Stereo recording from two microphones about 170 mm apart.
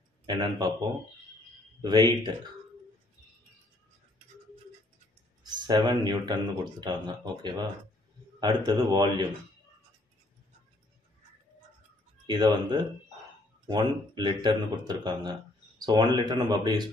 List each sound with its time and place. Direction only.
0.4 s speech: 20° right (ahead or behind)
1.8 s speech: 25° right (ahead or behind)
5.4 s speech: 25° right (ahead or behind)
12.3 s speech: 25° right (ahead or behind)